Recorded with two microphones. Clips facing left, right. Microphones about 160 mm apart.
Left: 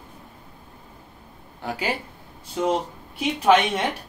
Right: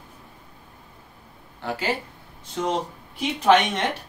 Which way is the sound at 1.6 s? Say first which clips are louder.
Right 1 dB; 10° left (ahead or behind).